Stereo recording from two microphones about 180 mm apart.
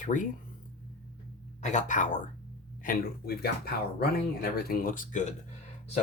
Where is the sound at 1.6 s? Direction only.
45° left (ahead or behind).